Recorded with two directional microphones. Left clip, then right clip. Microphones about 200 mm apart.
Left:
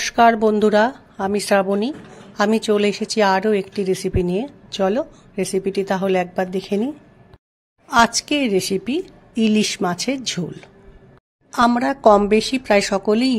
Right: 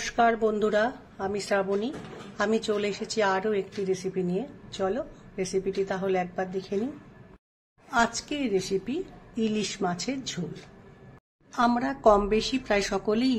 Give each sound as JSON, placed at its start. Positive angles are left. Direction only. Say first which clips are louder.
{"t": 0.0, "sound": "a woman's voice", "louder": "left 9 dB", "side_deg": 45}
{"t": 7.9, "sound": "a woman's voice", "louder": "left 10 dB", "side_deg": 50}
{"t": 11.5, "sound": "a woman's voice", "louder": "left 8 dB", "side_deg": 40}